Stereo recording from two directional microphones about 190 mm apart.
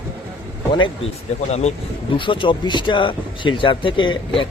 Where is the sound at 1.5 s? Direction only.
35° left (ahead or behind).